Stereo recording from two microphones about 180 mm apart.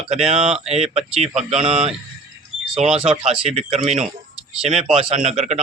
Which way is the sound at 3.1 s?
35° right (ahead or behind).